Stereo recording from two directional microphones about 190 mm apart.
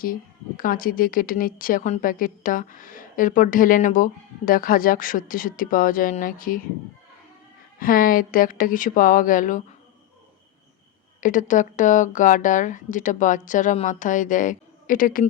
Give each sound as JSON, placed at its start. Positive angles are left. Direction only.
{"t": 0.0, "sound": "a woman's voice", "side_deg": 50}
{"t": 7.8, "sound": "a woman's voice", "side_deg": 50}
{"t": 11.2, "sound": "a woman's voice", "side_deg": 45}